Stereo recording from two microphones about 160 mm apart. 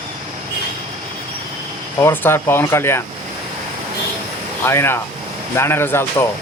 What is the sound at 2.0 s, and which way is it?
Speech, 15° left (ahead or behind).